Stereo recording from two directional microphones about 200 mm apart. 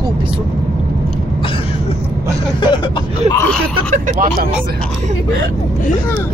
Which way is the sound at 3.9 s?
40° right (ahead or behind).